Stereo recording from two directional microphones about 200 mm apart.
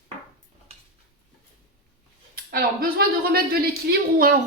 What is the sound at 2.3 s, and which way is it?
Speech, 45° right (ahead or behind).